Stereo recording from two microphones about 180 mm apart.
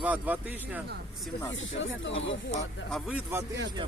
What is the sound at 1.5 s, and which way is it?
Speech, 90° left.